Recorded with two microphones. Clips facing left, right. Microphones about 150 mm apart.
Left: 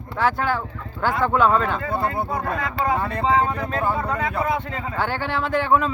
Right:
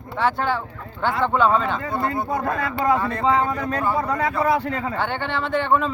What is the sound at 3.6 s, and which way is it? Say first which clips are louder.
Speech: even; 30° left (ahead or behind).